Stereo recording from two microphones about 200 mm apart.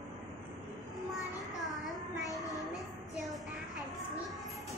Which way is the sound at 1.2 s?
Centre (ahead or behind).